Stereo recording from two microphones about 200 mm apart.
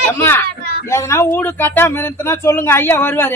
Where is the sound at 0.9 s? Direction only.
15° left (ahead or behind).